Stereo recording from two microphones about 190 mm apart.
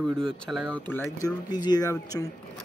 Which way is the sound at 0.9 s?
15° left (ahead or behind).